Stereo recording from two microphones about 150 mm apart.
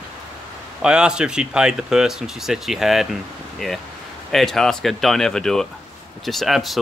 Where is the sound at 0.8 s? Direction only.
5° right (ahead or behind).